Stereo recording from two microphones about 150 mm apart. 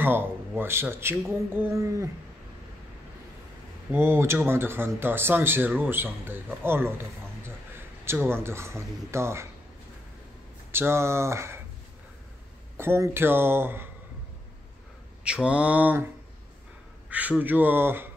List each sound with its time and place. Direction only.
0.0 s speech: 15° right (ahead or behind)
3.9 s a man's voice: 15° right (ahead or behind)
10.7 s speech: 15° right (ahead or behind)
12.7 s speech: 15° right (ahead or behind)
15.2 s speech: 5° right (ahead or behind)
17.1 s speech: 10° right (ahead or behind)